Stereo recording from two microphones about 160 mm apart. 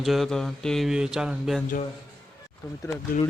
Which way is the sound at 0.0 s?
Centre (ahead or behind).